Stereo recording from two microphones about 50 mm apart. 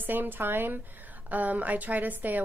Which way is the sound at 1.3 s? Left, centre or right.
Right.